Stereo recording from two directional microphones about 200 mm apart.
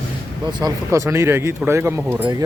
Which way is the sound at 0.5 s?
15° right (ahead or behind).